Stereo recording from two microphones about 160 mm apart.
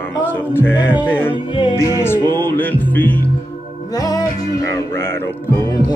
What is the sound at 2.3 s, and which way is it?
Music, 15° left (ahead or behind).